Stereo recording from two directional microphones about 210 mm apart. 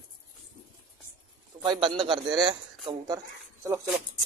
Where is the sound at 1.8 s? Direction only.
25° right (ahead or behind).